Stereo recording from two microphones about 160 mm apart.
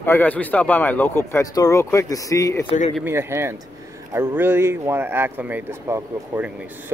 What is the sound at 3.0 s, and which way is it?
Speech, 15° right (ahead or behind).